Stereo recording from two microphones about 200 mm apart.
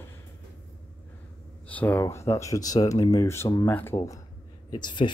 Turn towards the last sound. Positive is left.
turn(degrees=20)  # may be behind; listen again after turning